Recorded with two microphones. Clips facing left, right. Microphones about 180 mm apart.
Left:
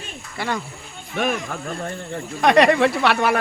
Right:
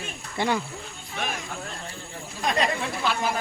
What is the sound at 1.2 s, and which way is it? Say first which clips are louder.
Speech: left 9 dB; 55° left (ahead or behind).